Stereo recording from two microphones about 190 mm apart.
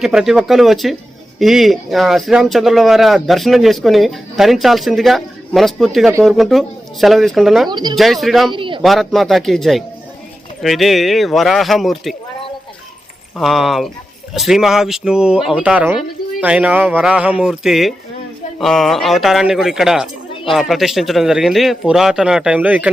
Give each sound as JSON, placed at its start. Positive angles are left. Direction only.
{"t": 0.0, "sound": "speech", "side_deg": 0}
{"t": 7.7, "sound": "speech", "side_deg": -20}
{"t": 7.9, "sound": "speech", "side_deg": 0}
{"t": 8.5, "sound": "a man's voice", "side_deg": -25}
{"t": 8.8, "sound": "speech", "side_deg": 0}
{"t": 13.3, "sound": "speech", "side_deg": 0}